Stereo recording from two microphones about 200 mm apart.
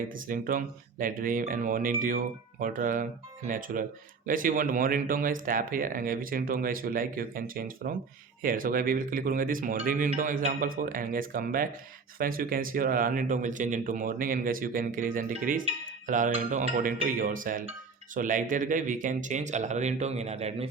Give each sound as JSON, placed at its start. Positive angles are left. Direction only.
{"t": 0.3, "sound": "speech", "side_deg": -45}